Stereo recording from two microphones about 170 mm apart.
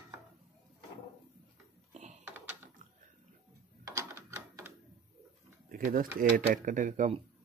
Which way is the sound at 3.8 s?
15° right (ahead or behind).